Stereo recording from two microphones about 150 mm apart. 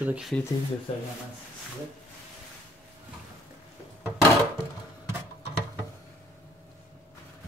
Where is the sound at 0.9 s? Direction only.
40° left (ahead or behind).